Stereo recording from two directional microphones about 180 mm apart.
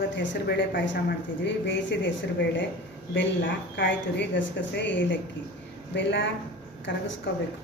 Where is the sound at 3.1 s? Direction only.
90° left.